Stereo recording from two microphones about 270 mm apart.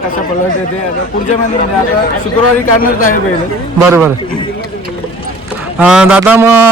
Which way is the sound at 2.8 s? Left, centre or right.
Left.